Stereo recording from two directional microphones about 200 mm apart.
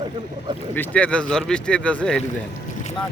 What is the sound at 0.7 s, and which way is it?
Speech, 10° left (ahead or behind).